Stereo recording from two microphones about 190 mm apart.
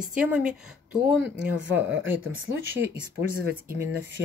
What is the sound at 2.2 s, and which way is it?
Speech, 90° right.